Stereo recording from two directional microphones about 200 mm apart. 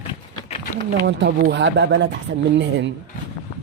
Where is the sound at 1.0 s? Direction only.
60° right (ahead or behind).